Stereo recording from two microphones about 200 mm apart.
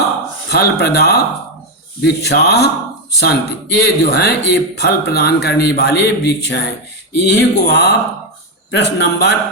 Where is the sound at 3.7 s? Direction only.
55° left (ahead or behind).